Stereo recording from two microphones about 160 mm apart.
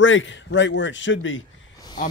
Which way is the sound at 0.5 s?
90° left.